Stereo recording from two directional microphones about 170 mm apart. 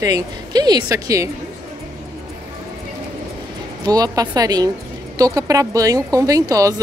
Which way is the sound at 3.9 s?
20° right (ahead or behind).